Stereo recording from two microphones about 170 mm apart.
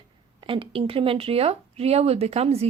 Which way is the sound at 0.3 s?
30° right (ahead or behind).